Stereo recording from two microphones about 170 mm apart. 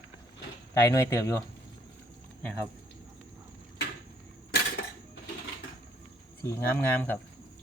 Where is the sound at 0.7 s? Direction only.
15° left (ahead or behind).